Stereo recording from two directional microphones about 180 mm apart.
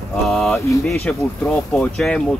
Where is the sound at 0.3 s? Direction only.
Centre (ahead or behind).